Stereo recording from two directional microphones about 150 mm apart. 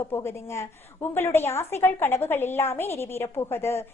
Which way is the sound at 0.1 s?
15° left (ahead or behind).